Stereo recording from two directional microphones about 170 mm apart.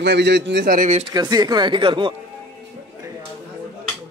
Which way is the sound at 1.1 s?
25° right (ahead or behind).